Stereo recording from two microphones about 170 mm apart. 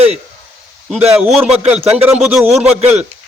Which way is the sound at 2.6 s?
40° right (ahead or behind).